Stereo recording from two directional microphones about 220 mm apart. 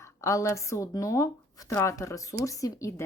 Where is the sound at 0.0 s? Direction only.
15° left (ahead or behind).